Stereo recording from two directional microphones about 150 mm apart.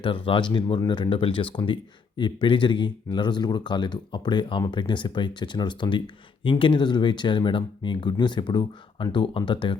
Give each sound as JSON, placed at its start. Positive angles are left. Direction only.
{"t": 0.0, "sound": "speech", "side_deg": 35}